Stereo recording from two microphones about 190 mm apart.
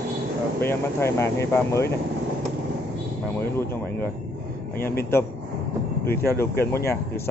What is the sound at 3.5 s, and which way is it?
A man's voice, 10° left (ahead or behind).